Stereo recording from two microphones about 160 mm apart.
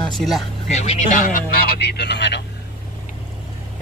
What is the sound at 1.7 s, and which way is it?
Speech, 90° left.